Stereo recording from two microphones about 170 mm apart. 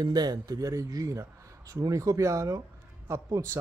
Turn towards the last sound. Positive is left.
turn(degrees=-15)  # may be behind; listen again after turning